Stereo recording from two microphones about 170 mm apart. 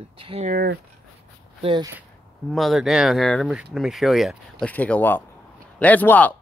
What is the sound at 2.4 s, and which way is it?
Speech, centre (ahead or behind).